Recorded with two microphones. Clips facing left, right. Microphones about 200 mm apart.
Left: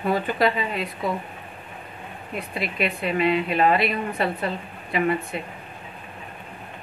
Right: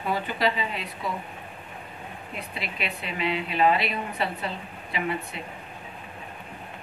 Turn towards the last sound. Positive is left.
turn(degrees=50)  # may be behind; listen again after turning